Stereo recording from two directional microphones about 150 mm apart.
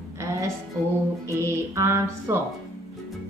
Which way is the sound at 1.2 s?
20° right (ahead or behind).